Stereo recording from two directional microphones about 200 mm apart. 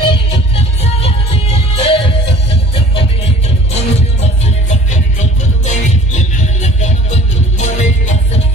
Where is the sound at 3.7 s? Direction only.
30° left (ahead or behind).